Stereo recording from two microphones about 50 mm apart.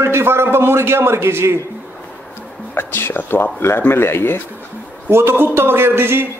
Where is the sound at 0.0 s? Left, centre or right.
Right.